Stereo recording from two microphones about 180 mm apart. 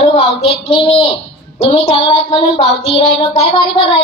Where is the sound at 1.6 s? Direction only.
30° left (ahead or behind).